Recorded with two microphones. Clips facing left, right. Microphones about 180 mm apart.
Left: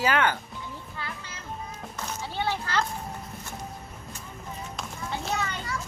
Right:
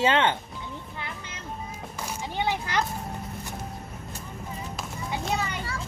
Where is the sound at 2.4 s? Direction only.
15° right (ahead or behind).